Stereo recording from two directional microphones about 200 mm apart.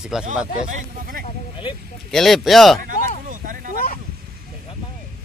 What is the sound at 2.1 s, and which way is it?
Speech, centre (ahead or behind).